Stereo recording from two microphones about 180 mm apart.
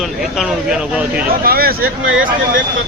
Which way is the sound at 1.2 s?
55° right (ahead or behind).